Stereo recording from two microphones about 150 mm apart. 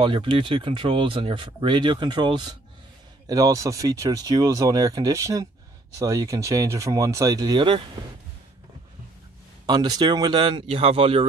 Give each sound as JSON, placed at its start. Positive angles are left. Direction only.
{"t": 0.0, "sound": "speech", "side_deg": -35}
{"t": 9.7, "sound": "speech", "side_deg": -25}